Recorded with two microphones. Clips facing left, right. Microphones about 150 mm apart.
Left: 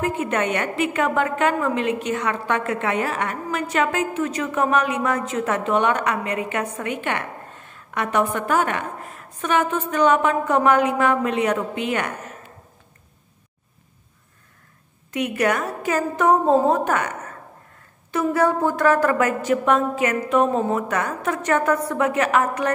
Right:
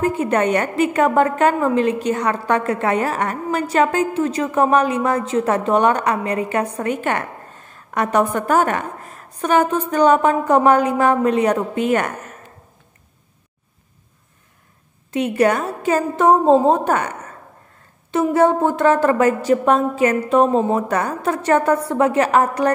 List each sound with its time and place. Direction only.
0.0 s a woman's voice: 35° right (ahead or behind)
15.0 s a woman's voice: 30° right (ahead or behind)
18.3 s a woman's voice: 25° right (ahead or behind)